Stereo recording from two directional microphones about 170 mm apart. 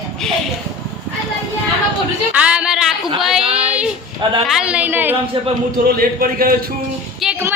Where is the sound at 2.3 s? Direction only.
5° right (ahead or behind).